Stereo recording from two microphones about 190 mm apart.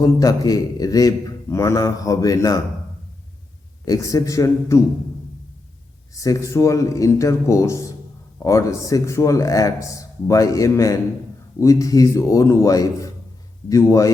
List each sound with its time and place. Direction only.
0.0 s a man's voice: 15° left (ahead or behind)
3.8 s a man's voice: 15° left (ahead or behind)
6.1 s a man's voice: 15° left (ahead or behind)